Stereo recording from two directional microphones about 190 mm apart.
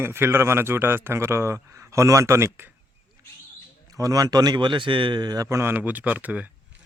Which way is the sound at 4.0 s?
20° right (ahead or behind).